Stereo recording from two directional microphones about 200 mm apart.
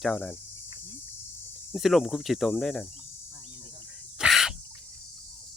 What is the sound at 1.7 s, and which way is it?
Cricket, centre (ahead or behind).